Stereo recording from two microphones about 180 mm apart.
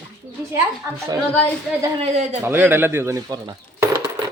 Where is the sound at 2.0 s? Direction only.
35° right (ahead or behind).